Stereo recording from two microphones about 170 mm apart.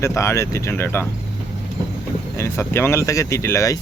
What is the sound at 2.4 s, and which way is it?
Speech, 15° left (ahead or behind).